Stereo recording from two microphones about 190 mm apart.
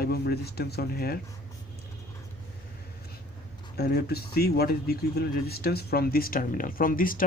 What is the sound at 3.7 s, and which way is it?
Speech, 55° left (ahead or behind).